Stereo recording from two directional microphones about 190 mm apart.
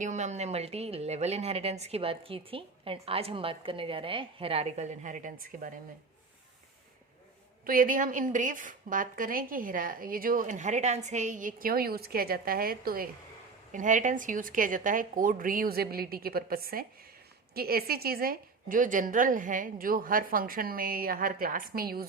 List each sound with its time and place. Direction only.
0.0 s speech: 40° right (ahead or behind)
7.6 s a woman's voice: 45° right (ahead or behind)